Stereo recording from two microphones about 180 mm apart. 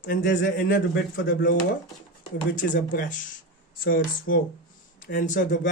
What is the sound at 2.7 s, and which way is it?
Speech, 45° left (ahead or behind).